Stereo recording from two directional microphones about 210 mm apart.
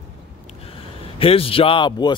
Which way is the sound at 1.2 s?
25° left (ahead or behind).